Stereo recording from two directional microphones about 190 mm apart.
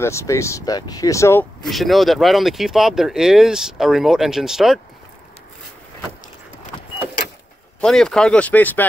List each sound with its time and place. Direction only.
0.0 s speech: 15° left (ahead or behind)
1.7 s speech: centre (ahead or behind)
7.8 s speech: 5° left (ahead or behind)